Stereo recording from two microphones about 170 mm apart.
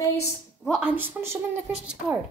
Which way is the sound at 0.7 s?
5° right (ahead or behind).